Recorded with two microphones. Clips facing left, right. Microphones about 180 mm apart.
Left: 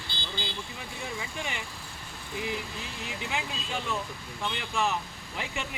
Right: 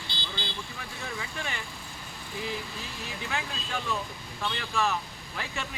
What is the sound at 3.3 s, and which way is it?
Speech, 15° left (ahead or behind).